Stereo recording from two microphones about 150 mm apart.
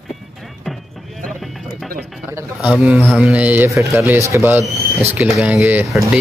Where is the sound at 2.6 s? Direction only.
10° right (ahead or behind).